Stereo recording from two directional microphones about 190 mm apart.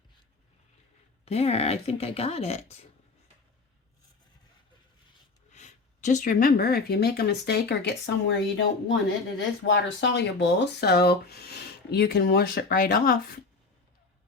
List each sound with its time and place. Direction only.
1.2 s speech: 35° left (ahead or behind)
5.5 s speech: 40° left (ahead or behind)